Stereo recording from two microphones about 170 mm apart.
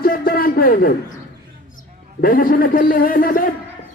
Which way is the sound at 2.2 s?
55° left (ahead or behind).